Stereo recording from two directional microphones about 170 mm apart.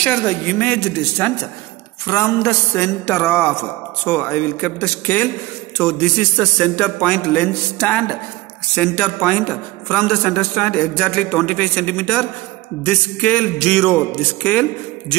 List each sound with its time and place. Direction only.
0.0 s a woman's voice: 10° left (ahead or behind)